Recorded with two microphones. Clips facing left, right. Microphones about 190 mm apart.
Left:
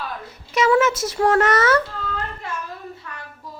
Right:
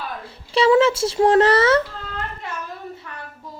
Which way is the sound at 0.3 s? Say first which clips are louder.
Right 3 dB; 30° right (ahead or behind).